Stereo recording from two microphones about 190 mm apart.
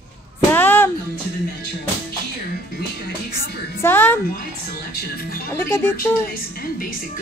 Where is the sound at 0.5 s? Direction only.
10° left (ahead or behind).